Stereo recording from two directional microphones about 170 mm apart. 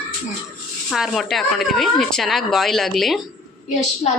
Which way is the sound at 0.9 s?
Centre (ahead or behind).